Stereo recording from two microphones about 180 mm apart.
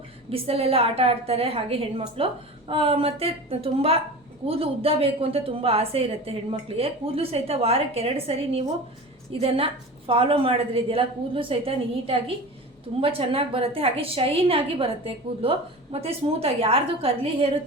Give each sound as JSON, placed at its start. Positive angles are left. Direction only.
{"t": 0.3, "sound": "a woman's voice", "side_deg": -35}